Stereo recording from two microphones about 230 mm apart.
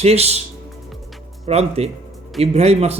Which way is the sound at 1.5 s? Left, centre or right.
Right.